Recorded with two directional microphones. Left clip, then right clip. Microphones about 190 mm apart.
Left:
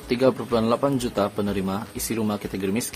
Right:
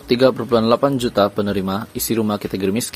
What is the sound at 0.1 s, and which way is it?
A man's voice, 25° right (ahead or behind).